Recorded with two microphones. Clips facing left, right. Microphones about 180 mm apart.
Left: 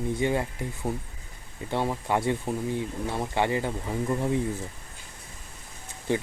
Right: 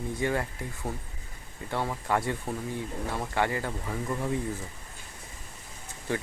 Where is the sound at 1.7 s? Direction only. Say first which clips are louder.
Left 2 dB; 20° left (ahead or behind).